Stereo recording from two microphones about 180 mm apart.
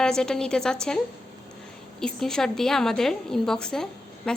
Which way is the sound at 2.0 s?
5° left (ahead or behind).